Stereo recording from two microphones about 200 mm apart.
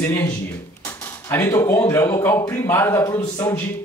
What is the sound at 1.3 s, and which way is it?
Speech, 15° left (ahead or behind).